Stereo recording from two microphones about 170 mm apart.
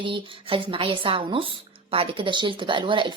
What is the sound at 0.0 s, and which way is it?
Speech, 30° right (ahead or behind).